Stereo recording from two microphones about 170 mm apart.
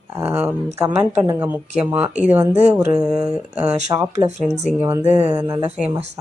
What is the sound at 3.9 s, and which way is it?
Speech, 15° right (ahead or behind).